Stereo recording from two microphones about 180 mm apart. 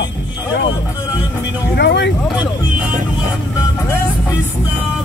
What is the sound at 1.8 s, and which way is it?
Speech, 75° left (ahead or behind).